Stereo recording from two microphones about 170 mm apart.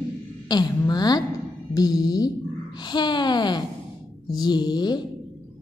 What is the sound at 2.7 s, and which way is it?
Speech, 25° left (ahead or behind).